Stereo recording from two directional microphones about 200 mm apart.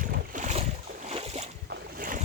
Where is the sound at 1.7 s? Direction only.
45° right (ahead or behind).